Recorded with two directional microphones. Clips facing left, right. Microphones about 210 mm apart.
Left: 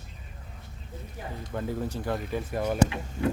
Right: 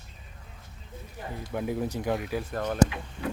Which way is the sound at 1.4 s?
10° right (ahead or behind).